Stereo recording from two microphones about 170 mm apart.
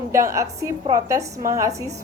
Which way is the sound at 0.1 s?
15° right (ahead or behind).